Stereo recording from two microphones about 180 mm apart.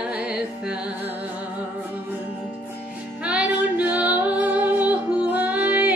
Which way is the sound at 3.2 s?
5° right (ahead or behind).